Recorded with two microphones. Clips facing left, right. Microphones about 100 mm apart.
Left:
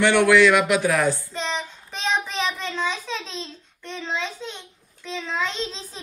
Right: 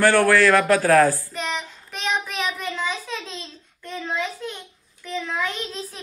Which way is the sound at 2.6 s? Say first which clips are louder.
Even; 10° right (ahead or behind).